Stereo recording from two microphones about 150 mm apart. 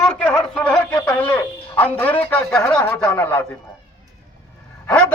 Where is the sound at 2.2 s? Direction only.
10° left (ahead or behind).